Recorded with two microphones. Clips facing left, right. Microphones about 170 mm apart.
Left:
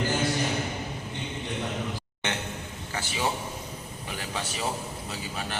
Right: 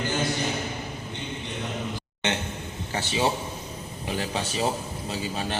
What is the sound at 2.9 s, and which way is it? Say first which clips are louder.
A man's voice: right 4 dB; 25° right (ahead or behind).